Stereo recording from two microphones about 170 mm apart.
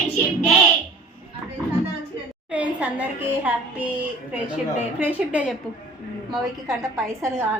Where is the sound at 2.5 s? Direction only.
10° right (ahead or behind).